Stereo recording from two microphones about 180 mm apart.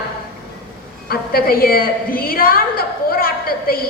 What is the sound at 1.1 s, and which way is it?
A woman's voice, 55° left (ahead or behind).